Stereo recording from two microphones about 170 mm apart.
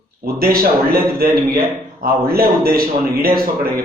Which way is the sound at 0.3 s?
60° right (ahead or behind).